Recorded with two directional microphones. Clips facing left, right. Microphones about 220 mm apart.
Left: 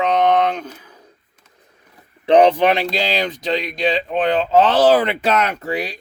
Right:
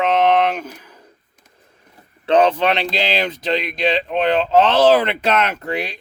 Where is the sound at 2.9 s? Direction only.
Centre (ahead or behind).